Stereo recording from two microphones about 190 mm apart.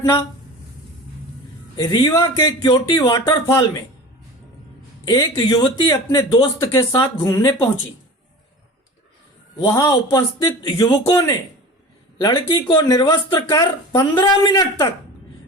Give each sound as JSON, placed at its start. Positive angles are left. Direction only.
{"t": 1.7, "sound": "speech", "side_deg": 25}
{"t": 5.0, "sound": "speech", "side_deg": 20}
{"t": 9.6, "sound": "a man's voice", "side_deg": 15}